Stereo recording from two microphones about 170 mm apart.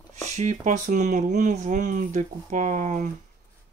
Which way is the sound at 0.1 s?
40° right (ahead or behind).